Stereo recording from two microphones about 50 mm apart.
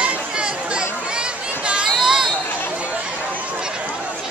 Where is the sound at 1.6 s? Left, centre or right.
Centre.